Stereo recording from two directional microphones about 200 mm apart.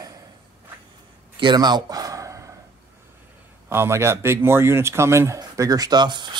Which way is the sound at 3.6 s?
10° right (ahead or behind).